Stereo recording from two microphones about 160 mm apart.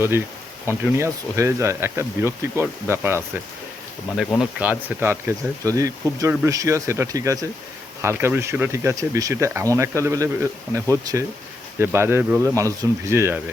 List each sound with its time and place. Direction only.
0.7 s speech: 15° right (ahead or behind)
4.4 s speech: 10° right (ahead or behind)